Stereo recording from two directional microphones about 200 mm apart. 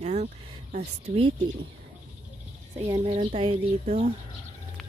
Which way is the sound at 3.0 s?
35° right (ahead or behind).